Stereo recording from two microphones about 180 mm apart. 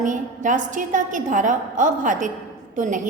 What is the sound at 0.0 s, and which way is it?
A woman's voice, 45° right (ahead or behind).